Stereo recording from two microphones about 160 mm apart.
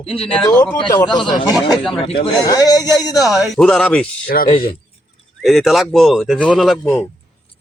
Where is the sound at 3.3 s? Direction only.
Centre (ahead or behind).